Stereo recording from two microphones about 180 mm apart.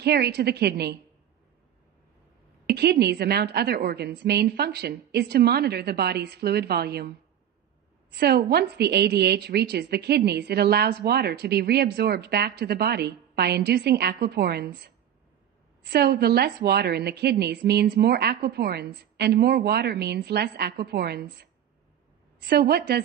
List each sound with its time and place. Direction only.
0.0 s a woman's voice: 65° right (ahead or behind)
2.6 s a woman's voice: 65° right (ahead or behind)